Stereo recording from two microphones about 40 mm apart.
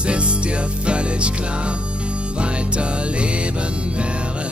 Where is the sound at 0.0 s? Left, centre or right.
Right.